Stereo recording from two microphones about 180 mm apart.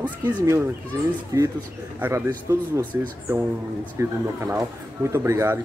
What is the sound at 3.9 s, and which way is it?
Speech, 15° right (ahead or behind).